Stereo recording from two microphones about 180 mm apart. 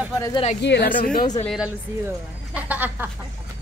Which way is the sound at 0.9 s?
50° left (ahead or behind).